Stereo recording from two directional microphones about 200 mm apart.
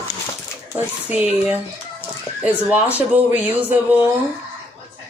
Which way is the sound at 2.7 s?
10° right (ahead or behind).